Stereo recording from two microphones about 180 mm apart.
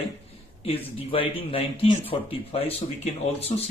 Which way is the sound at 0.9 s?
30° left (ahead or behind).